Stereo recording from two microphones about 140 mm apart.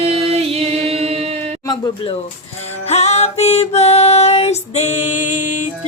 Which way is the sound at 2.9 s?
55° left (ahead or behind).